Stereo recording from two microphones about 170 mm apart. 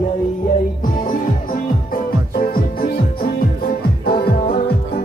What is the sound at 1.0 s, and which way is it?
Music, 55° left (ahead or behind).